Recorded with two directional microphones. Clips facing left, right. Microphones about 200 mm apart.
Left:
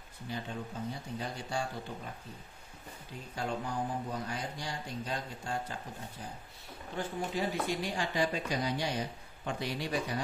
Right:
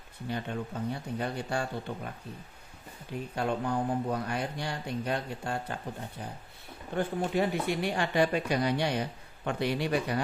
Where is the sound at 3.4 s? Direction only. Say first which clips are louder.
Right 5 dB; 60° right (ahead or behind).